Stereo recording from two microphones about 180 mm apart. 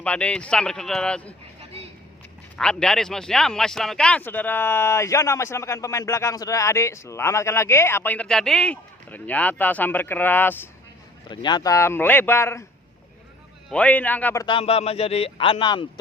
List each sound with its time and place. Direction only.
0.0 s speech: 5° left (ahead or behind)
2.6 s a man's voice: 5° left (ahead or behind)
11.3 s a man's voice: 25° left (ahead or behind)
13.7 s a man's voice: 5° left (ahead or behind)
14.4 s speech: 30° left (ahead or behind)